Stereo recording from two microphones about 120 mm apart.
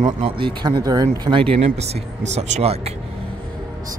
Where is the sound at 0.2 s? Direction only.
40° right (ahead or behind).